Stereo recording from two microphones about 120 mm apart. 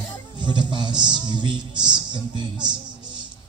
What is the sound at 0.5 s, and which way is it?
A man's voice, 40° right (ahead or behind).